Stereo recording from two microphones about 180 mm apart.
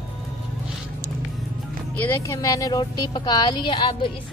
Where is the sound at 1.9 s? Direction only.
15° left (ahead or behind).